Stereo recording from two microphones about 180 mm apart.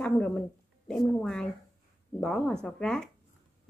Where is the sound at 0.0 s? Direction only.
5° left (ahead or behind).